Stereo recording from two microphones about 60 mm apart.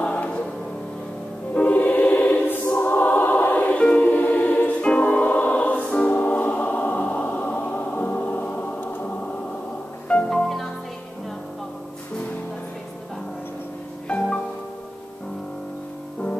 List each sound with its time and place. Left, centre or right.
0.0 s music: left
1.5 s music: left
6.0 s choir: left
8.9 s music: left
10.3 s music: centre
14.0 s music: left